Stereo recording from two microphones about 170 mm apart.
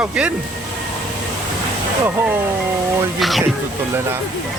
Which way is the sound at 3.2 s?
Centre (ahead or behind).